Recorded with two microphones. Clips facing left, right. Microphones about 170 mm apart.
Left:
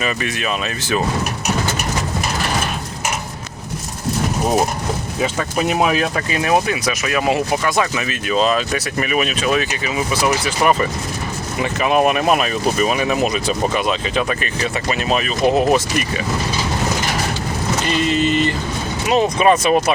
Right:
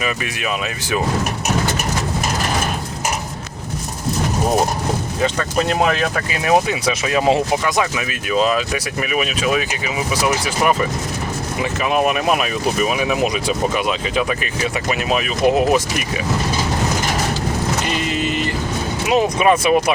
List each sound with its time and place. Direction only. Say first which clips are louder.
0.0 s speech: left 1 dB; 10° right (ahead or behind)
5.2 s speech: even; 10° left (ahead or behind)
6.3 s speech: right 1 dB; 5° right (ahead or behind)
6.7 s speech: right 1 dB; 25° right (ahead or behind)
7.6 s speech: left 1 dB; 10° right (ahead or behind)
17.8 s speech: left 4 dB; 10° right (ahead or behind)